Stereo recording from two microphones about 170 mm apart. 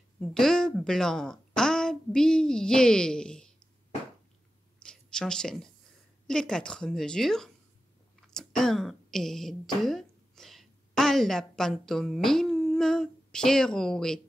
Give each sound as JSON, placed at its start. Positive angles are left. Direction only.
{"t": 0.2, "sound": "speech", "side_deg": 5}
{"t": 4.8, "sound": "a sound", "side_deg": 5}
{"t": 6.2, "sound": "a woman's voice", "side_deg": 5}